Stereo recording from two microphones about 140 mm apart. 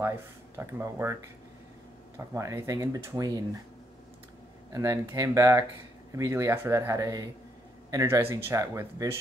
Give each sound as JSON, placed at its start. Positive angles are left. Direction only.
{"t": 0.6, "sound": "speech", "side_deg": -20}
{"t": 2.1, "sound": "speech", "side_deg": -20}
{"t": 4.7, "sound": "speech", "side_deg": -25}